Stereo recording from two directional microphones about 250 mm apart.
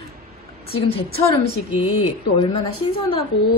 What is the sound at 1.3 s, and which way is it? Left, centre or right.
A woman's voice, centre.